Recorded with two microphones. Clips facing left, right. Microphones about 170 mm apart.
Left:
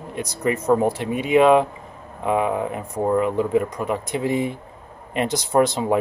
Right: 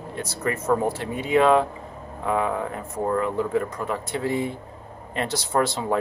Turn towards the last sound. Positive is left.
turn(degrees=15)  # may be behind; listen again after turning